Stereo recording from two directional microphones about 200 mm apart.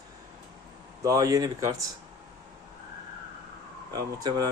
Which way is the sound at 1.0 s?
15° right (ahead or behind).